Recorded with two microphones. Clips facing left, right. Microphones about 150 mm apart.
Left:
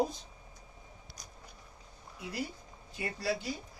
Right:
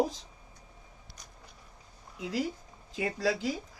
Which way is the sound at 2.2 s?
90° right.